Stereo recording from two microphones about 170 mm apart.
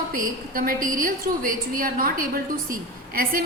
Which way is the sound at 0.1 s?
55° right (ahead or behind).